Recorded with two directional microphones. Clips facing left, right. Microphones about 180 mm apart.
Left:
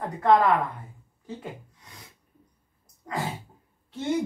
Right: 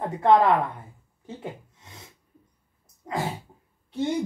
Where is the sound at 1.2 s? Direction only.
25° right (ahead or behind).